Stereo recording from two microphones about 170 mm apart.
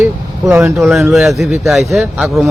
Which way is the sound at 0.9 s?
Centre (ahead or behind).